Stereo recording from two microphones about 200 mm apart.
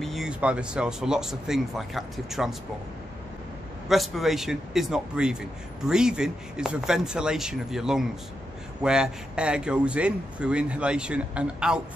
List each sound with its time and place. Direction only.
0.0 s a man's voice: centre (ahead or behind)
3.9 s a man's voice: centre (ahead or behind)